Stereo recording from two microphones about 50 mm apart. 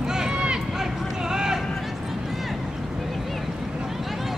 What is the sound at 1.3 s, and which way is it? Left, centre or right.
Vehicle, centre.